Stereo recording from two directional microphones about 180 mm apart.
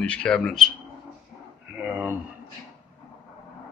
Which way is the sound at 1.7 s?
10° right (ahead or behind).